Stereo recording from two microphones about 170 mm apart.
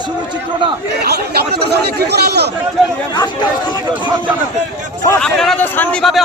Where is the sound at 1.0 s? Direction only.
70° right (ahead or behind).